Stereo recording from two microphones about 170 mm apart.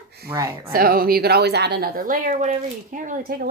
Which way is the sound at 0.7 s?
60° right (ahead or behind).